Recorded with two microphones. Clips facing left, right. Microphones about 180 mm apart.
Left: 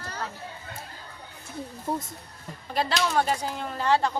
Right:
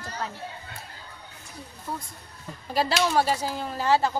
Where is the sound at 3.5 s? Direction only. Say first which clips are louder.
Right 1 dB; 5° right (ahead or behind).